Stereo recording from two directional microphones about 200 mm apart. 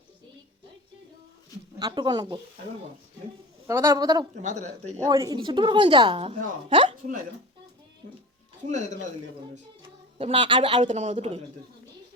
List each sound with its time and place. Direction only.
1.8 s a woman's voice: 20° right (ahead or behind)
3.7 s a woman's voice: 15° right (ahead or behind)
4.4 s speech: 35° right (ahead or behind)
5.0 s a woman's voice: 20° right (ahead or behind)
10.2 s a woman's voice: 25° right (ahead or behind)